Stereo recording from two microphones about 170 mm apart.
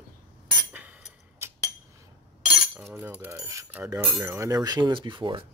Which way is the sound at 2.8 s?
10° right (ahead or behind).